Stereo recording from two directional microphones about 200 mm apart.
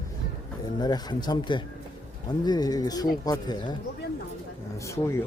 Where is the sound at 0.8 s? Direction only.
20° left (ahead or behind).